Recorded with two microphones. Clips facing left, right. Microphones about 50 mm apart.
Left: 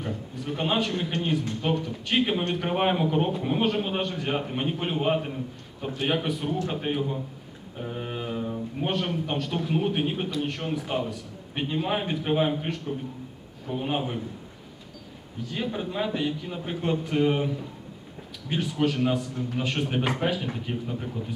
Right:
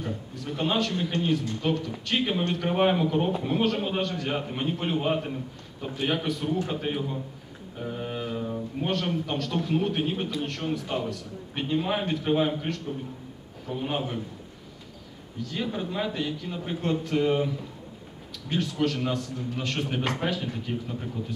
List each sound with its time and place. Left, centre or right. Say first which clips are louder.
0.5 s a man's voice: even; centre
15.4 s a man's voice: even; centre
18.5 s a man's voice: left 1 dB; centre